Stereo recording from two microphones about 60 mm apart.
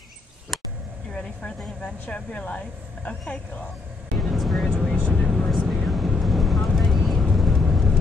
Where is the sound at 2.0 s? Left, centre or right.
Centre.